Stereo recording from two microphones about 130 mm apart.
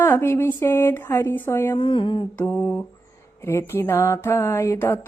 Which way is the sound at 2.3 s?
10° left (ahead or behind).